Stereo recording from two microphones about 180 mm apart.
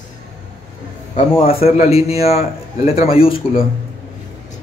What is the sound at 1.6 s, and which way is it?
A man's voice, 35° left (ahead or behind).